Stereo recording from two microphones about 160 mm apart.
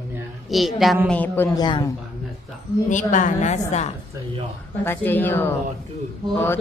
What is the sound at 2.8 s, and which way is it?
A woman's voice, 50° left (ahead or behind).